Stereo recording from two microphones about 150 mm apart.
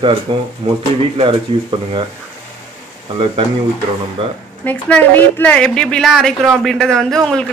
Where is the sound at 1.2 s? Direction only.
35° right (ahead or behind).